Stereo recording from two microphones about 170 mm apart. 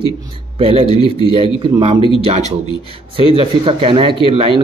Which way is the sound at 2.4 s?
20° left (ahead or behind).